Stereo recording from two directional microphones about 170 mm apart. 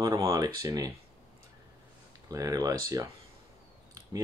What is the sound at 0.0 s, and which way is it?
Speech, 20° right (ahead or behind).